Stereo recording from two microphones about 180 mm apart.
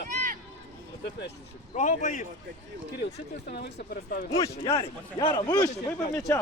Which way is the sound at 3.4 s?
60° left (ahead or behind).